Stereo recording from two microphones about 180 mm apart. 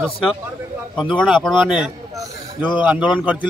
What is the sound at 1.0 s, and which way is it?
Speech, centre (ahead or behind).